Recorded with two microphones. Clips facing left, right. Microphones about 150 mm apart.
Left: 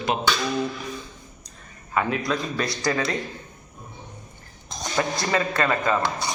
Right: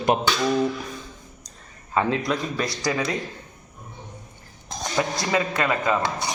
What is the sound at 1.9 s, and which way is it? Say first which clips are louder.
Speech: right 2 dB; 25° right (ahead or behind).